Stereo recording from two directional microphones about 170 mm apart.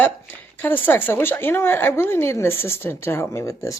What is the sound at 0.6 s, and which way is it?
Speech, 10° left (ahead or behind).